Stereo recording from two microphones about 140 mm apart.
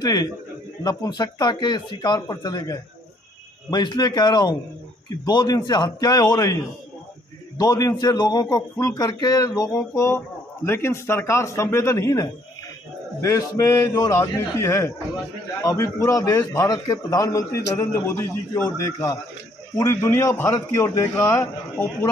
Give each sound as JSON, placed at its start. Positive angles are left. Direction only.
{"t": 0.0, "sound": "a man's voice", "side_deg": 25}